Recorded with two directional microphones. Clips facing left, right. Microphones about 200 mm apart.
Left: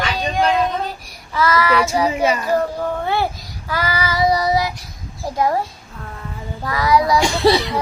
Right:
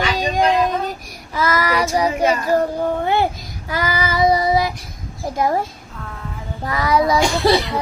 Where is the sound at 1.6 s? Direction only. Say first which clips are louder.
Left 2 dB; 40° right (ahead or behind).